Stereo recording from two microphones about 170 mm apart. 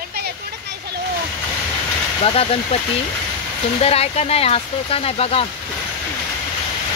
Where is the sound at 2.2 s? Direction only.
35° left (ahead or behind).